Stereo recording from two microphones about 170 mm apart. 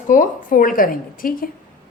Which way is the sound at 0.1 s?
50° left (ahead or behind).